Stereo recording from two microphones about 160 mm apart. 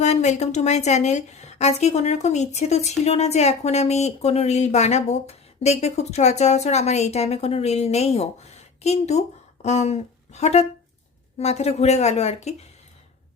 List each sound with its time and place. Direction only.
0.0 s a woman's voice: 45° left (ahead or behind)